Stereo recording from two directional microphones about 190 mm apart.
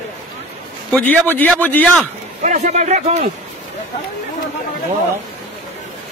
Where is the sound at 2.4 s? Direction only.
40° right (ahead or behind).